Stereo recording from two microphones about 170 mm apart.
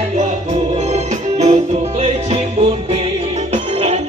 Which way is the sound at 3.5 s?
40° right (ahead or behind).